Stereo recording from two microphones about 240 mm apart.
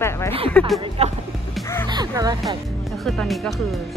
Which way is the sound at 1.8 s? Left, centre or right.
Centre.